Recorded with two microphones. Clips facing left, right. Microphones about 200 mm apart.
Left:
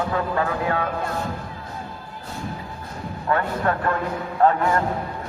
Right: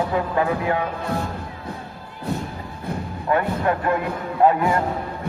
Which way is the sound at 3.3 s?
15° right (ahead or behind).